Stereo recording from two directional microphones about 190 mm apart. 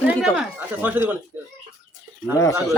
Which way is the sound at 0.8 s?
10° right (ahead or behind).